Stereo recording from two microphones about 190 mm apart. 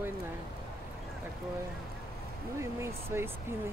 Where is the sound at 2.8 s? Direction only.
15° right (ahead or behind).